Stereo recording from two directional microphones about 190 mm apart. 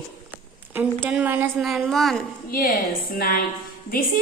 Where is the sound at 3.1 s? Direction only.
50° left (ahead or behind).